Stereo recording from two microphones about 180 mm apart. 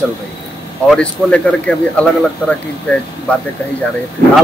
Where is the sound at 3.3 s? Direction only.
5° left (ahead or behind).